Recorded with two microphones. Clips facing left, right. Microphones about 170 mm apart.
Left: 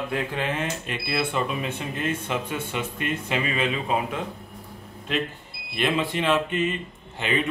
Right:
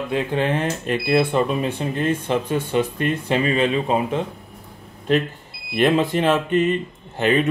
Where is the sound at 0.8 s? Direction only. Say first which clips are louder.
Right 9 dB; 45° right (ahead or behind).